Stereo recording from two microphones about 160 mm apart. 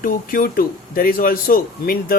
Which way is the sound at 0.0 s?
60° left (ahead or behind).